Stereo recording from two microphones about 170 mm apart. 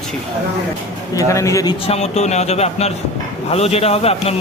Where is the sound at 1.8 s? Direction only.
40° left (ahead or behind).